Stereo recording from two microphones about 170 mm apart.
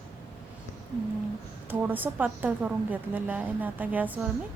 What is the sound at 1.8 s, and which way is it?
A woman's voice, 10° right (ahead or behind).